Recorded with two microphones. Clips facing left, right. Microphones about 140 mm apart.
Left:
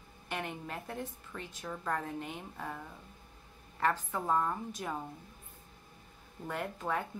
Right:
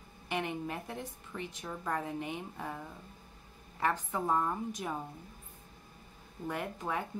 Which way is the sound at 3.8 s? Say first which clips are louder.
Even; 10° right (ahead or behind).